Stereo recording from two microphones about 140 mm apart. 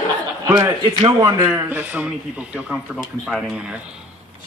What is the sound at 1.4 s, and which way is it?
A man's voice, 15° right (ahead or behind).